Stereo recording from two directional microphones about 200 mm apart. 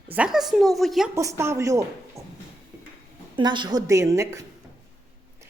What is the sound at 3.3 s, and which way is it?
Speech, 25° right (ahead or behind).